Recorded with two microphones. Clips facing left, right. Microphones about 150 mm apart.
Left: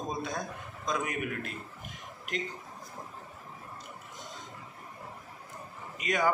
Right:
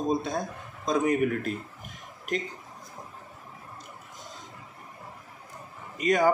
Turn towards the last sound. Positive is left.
turn(degrees=-40)  # may be behind; listen again after turning